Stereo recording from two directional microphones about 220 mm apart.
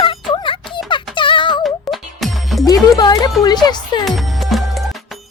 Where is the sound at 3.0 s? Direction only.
20° left (ahead or behind).